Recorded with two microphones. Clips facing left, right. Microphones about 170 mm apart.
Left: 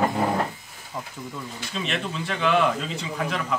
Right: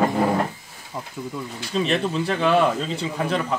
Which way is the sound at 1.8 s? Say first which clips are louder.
Right 6 dB; 35° right (ahead or behind).